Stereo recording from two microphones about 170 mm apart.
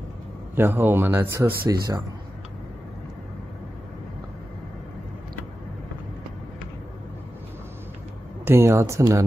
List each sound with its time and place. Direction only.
0.6 s speech: 10° right (ahead or behind)
1.7 s speech: 25° right (ahead or behind)
8.5 s speech: 15° right (ahead or behind)